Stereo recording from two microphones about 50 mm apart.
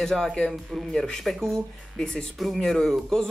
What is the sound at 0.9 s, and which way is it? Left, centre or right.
Speech, centre.